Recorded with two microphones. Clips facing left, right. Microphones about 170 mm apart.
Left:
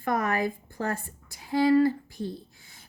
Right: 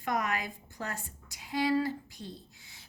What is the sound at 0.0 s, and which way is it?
A woman's voice, 55° left (ahead or behind).